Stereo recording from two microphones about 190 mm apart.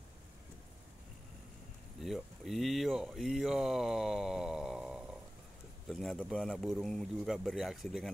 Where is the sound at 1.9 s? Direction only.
Centre (ahead or behind).